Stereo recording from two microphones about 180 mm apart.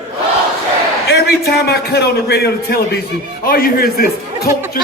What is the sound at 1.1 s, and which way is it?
A man's voice, 65° left (ahead or behind).